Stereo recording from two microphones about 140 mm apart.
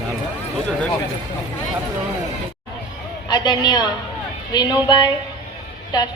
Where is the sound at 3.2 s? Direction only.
30° left (ahead or behind).